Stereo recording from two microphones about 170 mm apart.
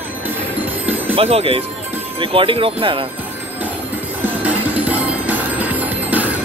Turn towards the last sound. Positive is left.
turn(degrees=-10)  # may be behind; listen again after turning